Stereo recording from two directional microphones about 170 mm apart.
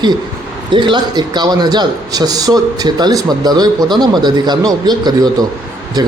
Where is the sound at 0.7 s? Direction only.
30° right (ahead or behind).